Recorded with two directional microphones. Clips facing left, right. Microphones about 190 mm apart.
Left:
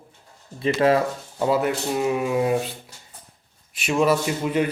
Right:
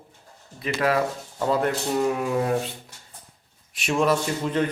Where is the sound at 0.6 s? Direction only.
25° left (ahead or behind).